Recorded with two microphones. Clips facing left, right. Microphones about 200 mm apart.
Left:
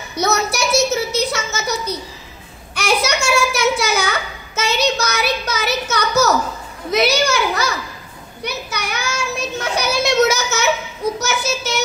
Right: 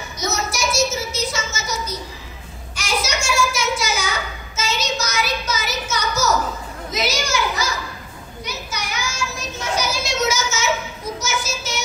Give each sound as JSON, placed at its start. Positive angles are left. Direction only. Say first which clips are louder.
{"t": 0.1, "sound": "a sound", "louder": "left 7 dB", "side_deg": 60}
{"t": 6.9, "sound": "children playing", "louder": "left 7 dB", "side_deg": 60}
{"t": 8.5, "sound": "child singing", "louder": "left 4 dB", "side_deg": 65}